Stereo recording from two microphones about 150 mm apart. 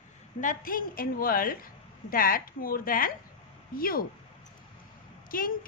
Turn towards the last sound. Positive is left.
turn(degrees=70)  # may be behind; listen again after turning